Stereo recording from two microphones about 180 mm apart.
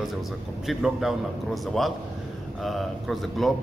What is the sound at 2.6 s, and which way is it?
Speech, centre (ahead or behind).